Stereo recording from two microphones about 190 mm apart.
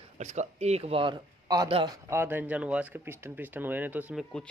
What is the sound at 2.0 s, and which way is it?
Speech, 10° right (ahead or behind).